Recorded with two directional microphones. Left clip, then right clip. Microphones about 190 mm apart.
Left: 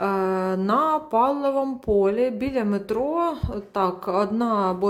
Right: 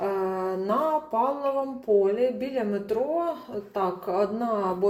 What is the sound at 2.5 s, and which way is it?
A woman's voice, 35° left (ahead or behind).